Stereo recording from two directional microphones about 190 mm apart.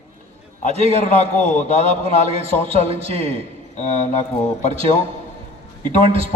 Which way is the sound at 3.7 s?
35° left (ahead or behind).